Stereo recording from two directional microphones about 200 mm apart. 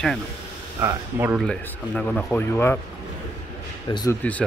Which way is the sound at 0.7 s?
10° right (ahead or behind).